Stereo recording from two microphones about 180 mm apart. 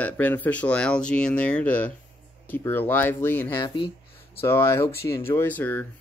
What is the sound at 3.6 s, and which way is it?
Speech, 25° left (ahead or behind).